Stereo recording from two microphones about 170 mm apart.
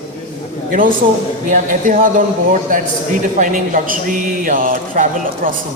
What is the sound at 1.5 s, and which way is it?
Speech, 50° right (ahead or behind).